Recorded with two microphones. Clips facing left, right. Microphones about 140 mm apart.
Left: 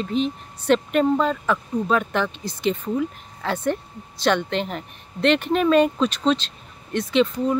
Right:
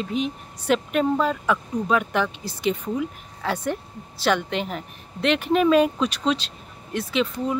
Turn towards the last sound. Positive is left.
turn(degrees=-5)  # may be behind; listen again after turning